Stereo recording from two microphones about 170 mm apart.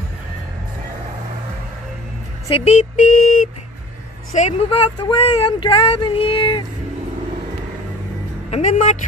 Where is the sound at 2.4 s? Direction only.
35° left (ahead or behind).